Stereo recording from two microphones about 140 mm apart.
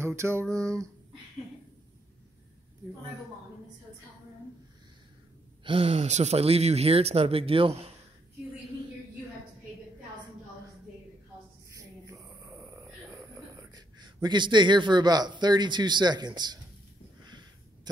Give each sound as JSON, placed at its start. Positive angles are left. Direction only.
{"t": 0.0, "sound": "a sound", "side_deg": -20}
{"t": 5.6, "sound": "speech", "side_deg": -40}
{"t": 12.1, "sound": "snoring", "side_deg": -25}